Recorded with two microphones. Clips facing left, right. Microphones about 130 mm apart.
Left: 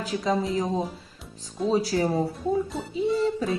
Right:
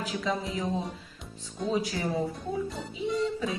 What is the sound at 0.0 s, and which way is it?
Speech, 35° left (ahead or behind).